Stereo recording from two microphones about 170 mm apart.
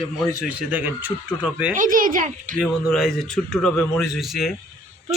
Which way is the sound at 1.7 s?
50° right (ahead or behind).